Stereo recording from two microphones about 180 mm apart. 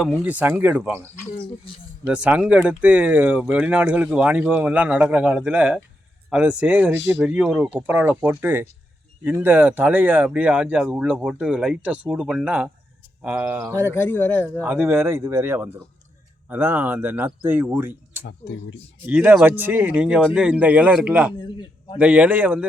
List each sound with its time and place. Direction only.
0.3 s speech: 10° right (ahead or behind)
2.0 s speech: 5° right (ahead or behind)
13.7 s speech: 10° left (ahead or behind)
14.6 s speech: 10° right (ahead or behind)
18.3 s speech: 75° left (ahead or behind)
19.0 s speech: 10° right (ahead or behind)
21.4 s a sound: 25° left (ahead or behind)
21.9 s speech: 5° right (ahead or behind)